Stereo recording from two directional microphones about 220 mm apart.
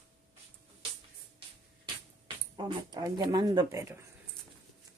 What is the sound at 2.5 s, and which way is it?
Speech, 20° right (ahead or behind).